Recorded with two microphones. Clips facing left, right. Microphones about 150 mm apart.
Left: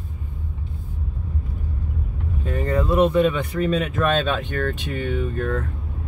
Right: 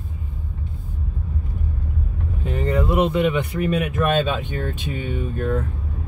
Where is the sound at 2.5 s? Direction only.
15° right (ahead or behind).